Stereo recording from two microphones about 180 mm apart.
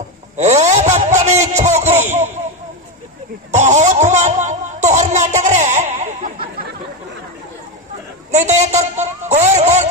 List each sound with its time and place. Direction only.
0.4 s a sound: 40° right (ahead or behind)
3.5 s music: 40° right (ahead or behind)
8.3 s a man's voice: 40° right (ahead or behind)